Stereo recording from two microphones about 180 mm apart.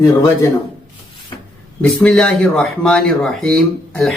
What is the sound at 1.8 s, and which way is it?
Speech, 5° left (ahead or behind).